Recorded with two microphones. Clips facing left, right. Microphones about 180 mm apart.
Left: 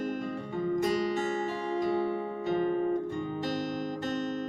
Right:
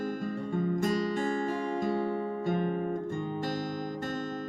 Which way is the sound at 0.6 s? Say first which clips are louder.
Left 2 dB; 45° right (ahead or behind).